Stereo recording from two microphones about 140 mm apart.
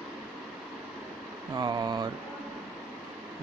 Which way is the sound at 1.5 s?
30° right (ahead or behind).